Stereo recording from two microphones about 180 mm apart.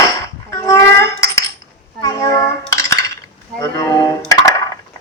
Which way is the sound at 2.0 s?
20° left (ahead or behind).